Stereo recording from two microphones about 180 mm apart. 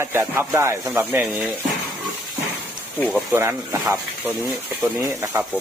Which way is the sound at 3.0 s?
10° left (ahead or behind).